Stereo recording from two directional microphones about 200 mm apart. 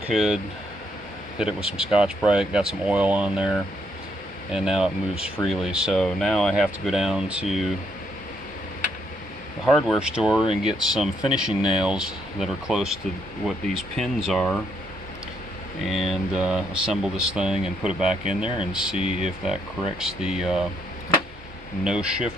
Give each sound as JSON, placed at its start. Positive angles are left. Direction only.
{"t": 0.1, "sound": "speech", "side_deg": -5}
{"t": 1.4, "sound": "speech", "side_deg": -5}
{"t": 9.7, "sound": "speech", "side_deg": 0}
{"t": 15.8, "sound": "speech", "side_deg": 0}
{"t": 18.9, "sound": "speech", "side_deg": -40}
{"t": 20.0, "sound": "speech", "side_deg": -5}
{"t": 21.8, "sound": "speech", "side_deg": -5}